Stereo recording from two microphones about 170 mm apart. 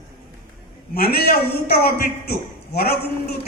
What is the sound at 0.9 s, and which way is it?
A man's voice, 65° left (ahead or behind).